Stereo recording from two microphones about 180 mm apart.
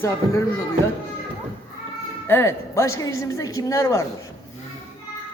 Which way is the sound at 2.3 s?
15° left (ahead or behind).